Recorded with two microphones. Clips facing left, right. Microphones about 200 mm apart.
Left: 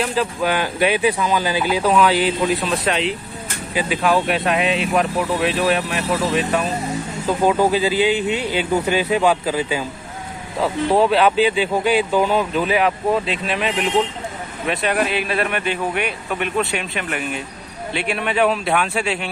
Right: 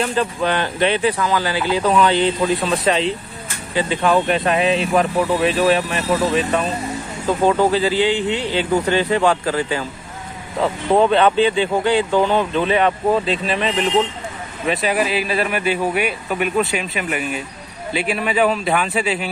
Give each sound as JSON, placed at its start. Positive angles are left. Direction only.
{"t": 0.0, "sound": "speech", "side_deg": 5}